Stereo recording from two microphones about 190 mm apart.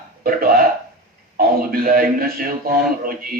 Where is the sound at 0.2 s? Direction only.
50° right (ahead or behind).